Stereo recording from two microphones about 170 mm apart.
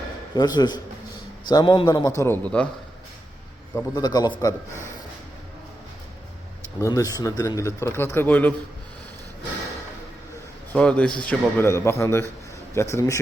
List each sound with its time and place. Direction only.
0.3 s a man's voice: 25° left (ahead or behind); by 2.6 s 5° left (ahead or behind)
3.8 s a man's voice: 20° left (ahead or behind)
6.8 s speech: 20° left (ahead or behind)
10.7 s a man's voice: 5° left (ahead or behind)